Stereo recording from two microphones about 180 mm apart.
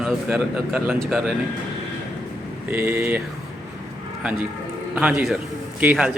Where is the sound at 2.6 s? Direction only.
10° right (ahead or behind).